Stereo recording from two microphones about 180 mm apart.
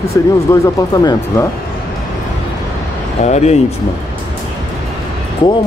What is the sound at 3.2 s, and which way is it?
Speech, 40° left (ahead or behind).